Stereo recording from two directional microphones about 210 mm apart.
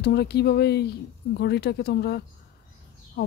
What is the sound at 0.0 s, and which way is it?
A woman's voice, 50° left (ahead or behind).